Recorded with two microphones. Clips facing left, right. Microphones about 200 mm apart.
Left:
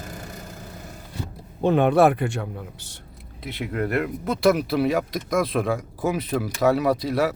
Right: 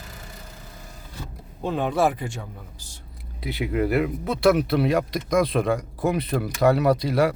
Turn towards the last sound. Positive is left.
turn(degrees=0)  # may be behind; listen again after turning